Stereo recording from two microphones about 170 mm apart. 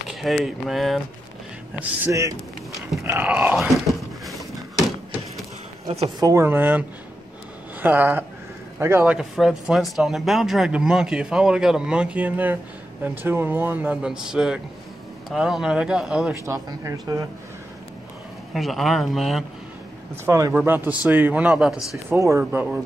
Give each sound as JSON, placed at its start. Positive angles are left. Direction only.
{"t": 0.1, "sound": "a sound", "side_deg": 0}
{"t": 0.7, "sound": "speech", "side_deg": 0}
{"t": 1.8, "sound": "speech", "side_deg": -15}
{"t": 4.3, "sound": "a sound", "side_deg": 0}
{"t": 6.0, "sound": "speech", "side_deg": -20}
{"t": 16.8, "sound": "speech", "side_deg": -20}
{"t": 18.5, "sound": "speech", "side_deg": 0}
{"t": 20.2, "sound": "speech", "side_deg": -15}
{"t": 22.1, "sound": "speech", "side_deg": -15}